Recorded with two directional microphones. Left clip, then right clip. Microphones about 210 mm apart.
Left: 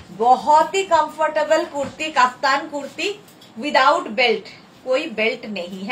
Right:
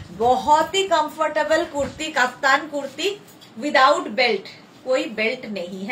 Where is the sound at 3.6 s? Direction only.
15° right (ahead or behind).